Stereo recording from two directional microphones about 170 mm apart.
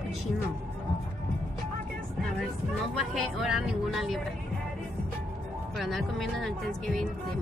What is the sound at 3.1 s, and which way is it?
Speech, centre (ahead or behind).